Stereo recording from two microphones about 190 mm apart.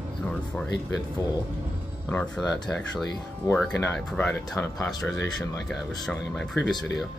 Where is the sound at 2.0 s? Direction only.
10° left (ahead or behind).